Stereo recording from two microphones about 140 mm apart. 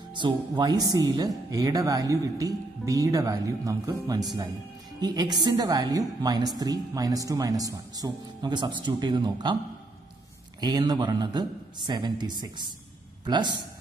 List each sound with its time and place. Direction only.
0.1 s a woman's voice: 35° right (ahead or behind)
10.6 s a man's voice: 30° right (ahead or behind)